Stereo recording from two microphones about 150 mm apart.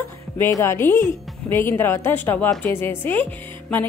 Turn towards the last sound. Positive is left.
turn(degrees=10)  # may be behind; listen again after turning